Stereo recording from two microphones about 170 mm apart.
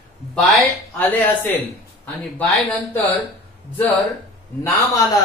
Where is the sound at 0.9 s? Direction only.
10° left (ahead or behind).